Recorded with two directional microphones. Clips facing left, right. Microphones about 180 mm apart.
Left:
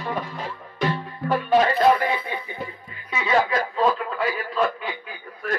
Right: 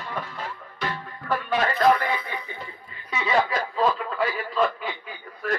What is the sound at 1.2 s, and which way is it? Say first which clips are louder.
Music: left 6 dB; 20° left (ahead or behind).